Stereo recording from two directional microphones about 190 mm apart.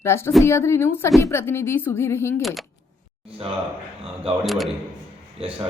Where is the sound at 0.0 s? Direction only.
15° left (ahead or behind).